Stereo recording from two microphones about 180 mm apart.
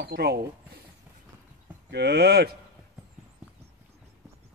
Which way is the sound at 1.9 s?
65° right (ahead or behind).